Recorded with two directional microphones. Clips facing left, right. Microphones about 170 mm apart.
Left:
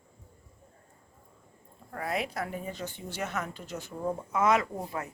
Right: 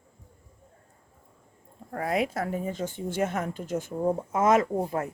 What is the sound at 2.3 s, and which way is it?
Speech, 40° right (ahead or behind).